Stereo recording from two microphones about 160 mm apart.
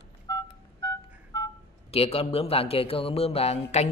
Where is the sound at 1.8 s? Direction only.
40° left (ahead or behind).